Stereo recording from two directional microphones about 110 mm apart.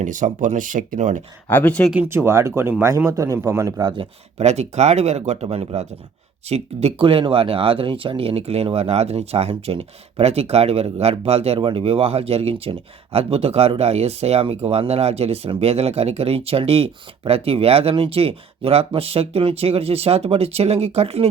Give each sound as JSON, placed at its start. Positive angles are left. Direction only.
{"t": 0.2, "sound": "speech", "side_deg": -90}
{"t": 1.5, "sound": "speech", "side_deg": 15}
{"t": 2.0, "sound": "speech", "side_deg": -25}
{"t": 3.8, "sound": "speech", "side_deg": -45}
{"t": 4.4, "sound": "speech", "side_deg": -80}